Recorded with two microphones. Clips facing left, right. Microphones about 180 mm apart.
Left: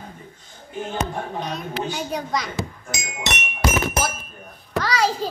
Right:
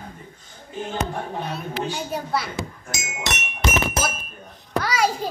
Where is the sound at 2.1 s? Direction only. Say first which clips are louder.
Even; 10° right (ahead or behind).